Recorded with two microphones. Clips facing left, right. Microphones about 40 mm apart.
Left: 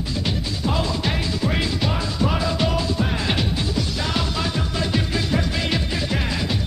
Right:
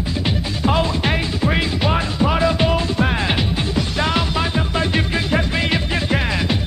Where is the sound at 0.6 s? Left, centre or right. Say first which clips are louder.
Right 5 dB; right.